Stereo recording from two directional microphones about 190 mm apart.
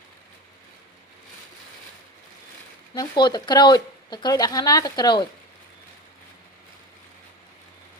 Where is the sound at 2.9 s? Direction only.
20° left (ahead or behind).